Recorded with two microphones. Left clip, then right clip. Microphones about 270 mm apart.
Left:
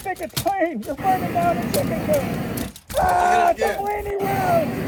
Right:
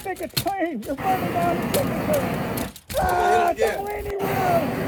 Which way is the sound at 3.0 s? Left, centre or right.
Left.